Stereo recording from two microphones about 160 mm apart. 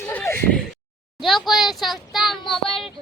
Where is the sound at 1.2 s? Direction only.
Centre (ahead or behind).